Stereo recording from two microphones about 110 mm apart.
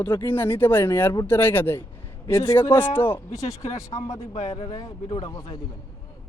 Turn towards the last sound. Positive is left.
turn(degrees=40)  # may be behind; listen again after turning